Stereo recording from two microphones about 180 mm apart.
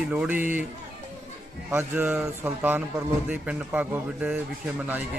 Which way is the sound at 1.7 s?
10° right (ahead or behind).